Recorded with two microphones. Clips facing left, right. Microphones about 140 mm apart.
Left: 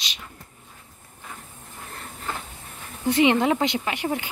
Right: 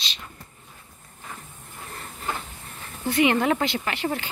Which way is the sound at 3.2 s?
20° left (ahead or behind).